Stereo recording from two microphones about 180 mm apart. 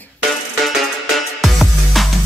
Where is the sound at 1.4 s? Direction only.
Centre (ahead or behind).